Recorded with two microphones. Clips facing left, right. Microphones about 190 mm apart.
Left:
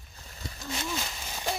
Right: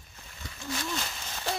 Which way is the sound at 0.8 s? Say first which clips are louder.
Even; 10° left (ahead or behind).